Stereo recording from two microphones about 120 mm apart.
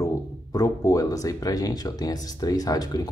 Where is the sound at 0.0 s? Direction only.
30° left (ahead or behind).